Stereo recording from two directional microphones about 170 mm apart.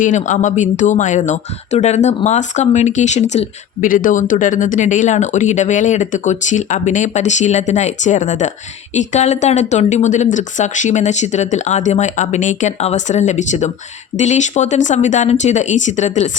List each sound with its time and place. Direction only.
0.0 s speech: 45° left (ahead or behind)